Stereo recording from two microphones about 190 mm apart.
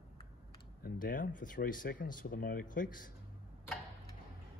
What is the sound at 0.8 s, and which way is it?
Speech, 50° left (ahead or behind).